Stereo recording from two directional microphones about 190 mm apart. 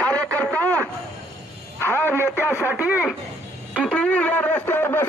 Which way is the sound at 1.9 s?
10° left (ahead or behind).